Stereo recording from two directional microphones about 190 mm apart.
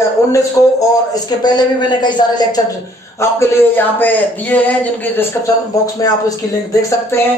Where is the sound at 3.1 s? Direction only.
15° left (ahead or behind).